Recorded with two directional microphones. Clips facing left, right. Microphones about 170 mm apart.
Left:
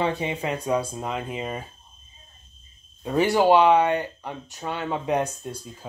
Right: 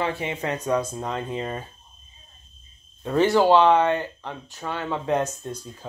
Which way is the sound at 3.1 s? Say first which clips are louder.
Right 1 dB; 10° left (ahead or behind).